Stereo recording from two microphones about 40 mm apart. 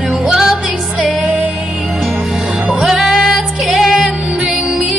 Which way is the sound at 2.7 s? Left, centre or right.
Centre.